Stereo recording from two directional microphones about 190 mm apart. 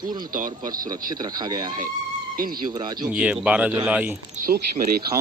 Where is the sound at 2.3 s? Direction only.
50° right (ahead or behind).